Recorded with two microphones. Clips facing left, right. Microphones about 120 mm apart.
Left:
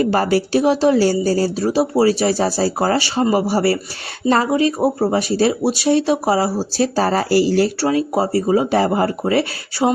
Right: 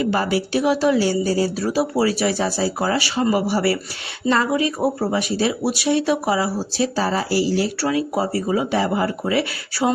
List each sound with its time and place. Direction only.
0.0 s speech: 40° left (ahead or behind)
1.5 s speech: 25° left (ahead or behind)
4.8 s speech: 30° left (ahead or behind); by 7.7 s 50° left (ahead or behind)
7.8 s speech: 30° left (ahead or behind)